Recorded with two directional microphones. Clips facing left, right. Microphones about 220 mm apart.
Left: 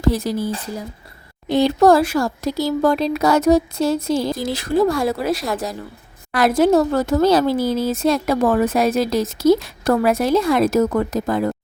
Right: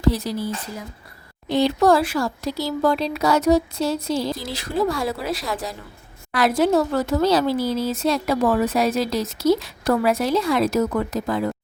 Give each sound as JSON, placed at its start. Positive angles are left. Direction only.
{"t": 0.0, "sound": "a woman's voice", "side_deg": 50}